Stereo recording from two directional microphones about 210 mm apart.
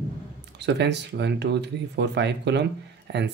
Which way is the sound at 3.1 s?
55° right (ahead or behind).